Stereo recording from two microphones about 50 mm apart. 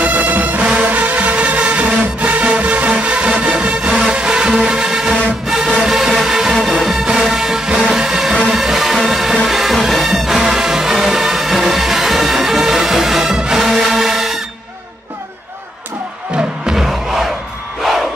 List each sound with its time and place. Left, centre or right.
0.0 s music: right
3.9 s music: centre
4.2 s music: centre
16.3 s crowd: centre